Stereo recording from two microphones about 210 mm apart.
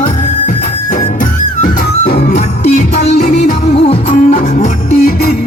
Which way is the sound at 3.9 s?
30° left (ahead or behind).